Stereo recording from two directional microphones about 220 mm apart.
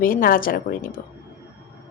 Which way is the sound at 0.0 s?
40° left (ahead or behind).